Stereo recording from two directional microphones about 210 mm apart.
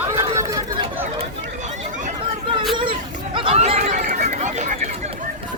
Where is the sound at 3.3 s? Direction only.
25° right (ahead or behind).